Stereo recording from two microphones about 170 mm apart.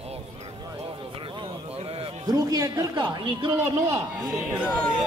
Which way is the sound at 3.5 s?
20° right (ahead or behind).